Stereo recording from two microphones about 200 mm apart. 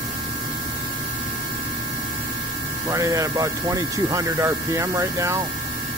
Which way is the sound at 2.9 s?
15° right (ahead or behind).